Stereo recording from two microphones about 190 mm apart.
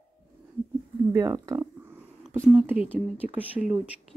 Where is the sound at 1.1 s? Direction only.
15° right (ahead or behind).